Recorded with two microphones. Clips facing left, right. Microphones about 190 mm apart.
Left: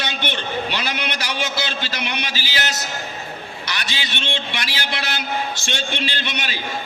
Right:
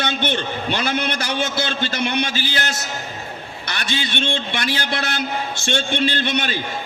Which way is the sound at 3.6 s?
55° right (ahead or behind).